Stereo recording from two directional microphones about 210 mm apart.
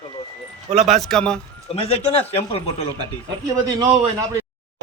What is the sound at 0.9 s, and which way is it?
Speech, centre (ahead or behind).